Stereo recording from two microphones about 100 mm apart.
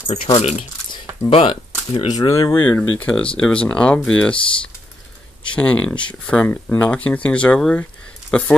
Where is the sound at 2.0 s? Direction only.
35° left (ahead or behind).